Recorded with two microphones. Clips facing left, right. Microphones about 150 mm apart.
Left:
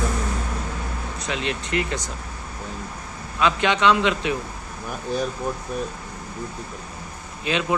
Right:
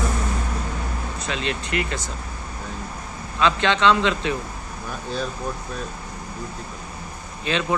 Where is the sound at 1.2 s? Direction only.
20° left (ahead or behind).